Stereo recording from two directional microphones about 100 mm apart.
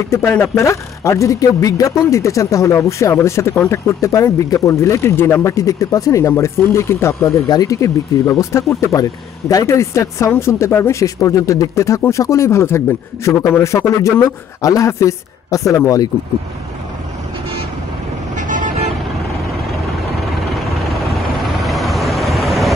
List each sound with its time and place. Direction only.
0.3 s a man's voice: 25° left (ahead or behind)
7.4 s a man's voice: 40° left (ahead or behind)
20.2 s vehicle: centre (ahead or behind)